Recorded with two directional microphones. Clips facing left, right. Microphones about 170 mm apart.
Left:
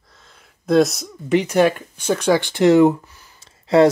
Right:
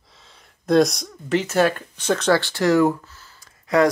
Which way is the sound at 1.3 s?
15° left (ahead or behind).